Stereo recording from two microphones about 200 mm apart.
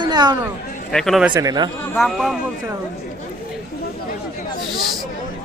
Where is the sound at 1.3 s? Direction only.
20° right (ahead or behind).